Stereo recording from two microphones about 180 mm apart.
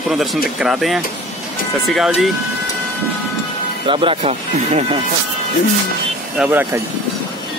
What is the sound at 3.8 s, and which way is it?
Speech, 30° right (ahead or behind).